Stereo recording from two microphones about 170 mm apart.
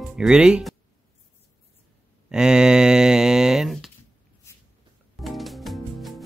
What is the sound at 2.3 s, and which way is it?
Speech, 5° right (ahead or behind).